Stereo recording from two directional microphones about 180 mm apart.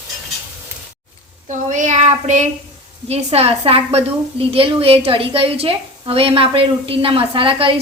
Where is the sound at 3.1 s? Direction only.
35° right (ahead or behind).